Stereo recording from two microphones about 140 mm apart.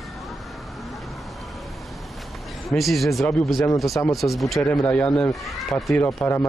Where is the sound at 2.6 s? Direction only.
Centre (ahead or behind).